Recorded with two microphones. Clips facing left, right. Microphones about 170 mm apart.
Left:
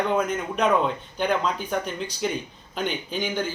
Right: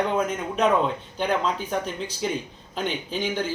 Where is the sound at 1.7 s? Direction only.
5° right (ahead or behind).